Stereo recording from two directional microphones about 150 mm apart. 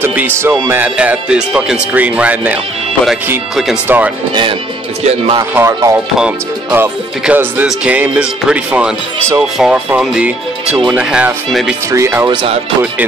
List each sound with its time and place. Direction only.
0.0 s speech: 15° right (ahead or behind)
3.9 s speech: 10° right (ahead or behind)
5.5 s speech: 20° right (ahead or behind)
6.1 s speech: 10° right (ahead or behind)
11.9 s speech: 15° right (ahead or behind)